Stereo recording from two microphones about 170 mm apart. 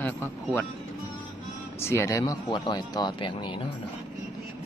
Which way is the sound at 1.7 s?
15° left (ahead or behind).